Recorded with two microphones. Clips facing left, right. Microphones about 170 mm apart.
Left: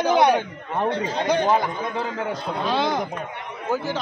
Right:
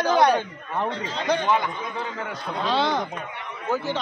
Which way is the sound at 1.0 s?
40° left (ahead or behind).